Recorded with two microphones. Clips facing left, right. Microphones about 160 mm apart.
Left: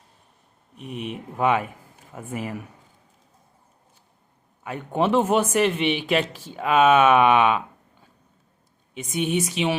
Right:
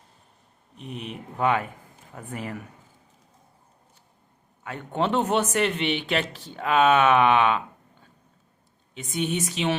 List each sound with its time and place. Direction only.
0.8 s speech: 15° left (ahead or behind)
4.6 s speech: 15° left (ahead or behind)
9.1 s speech: 15° left (ahead or behind)